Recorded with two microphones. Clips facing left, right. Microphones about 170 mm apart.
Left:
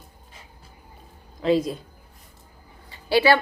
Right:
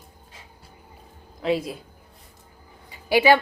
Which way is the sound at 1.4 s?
5° right (ahead or behind).